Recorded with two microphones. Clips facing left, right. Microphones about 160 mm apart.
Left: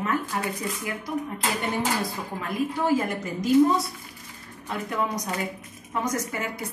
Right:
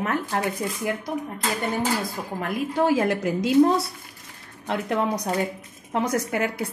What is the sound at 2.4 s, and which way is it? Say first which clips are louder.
A woman's voice: right 3 dB; 80° right.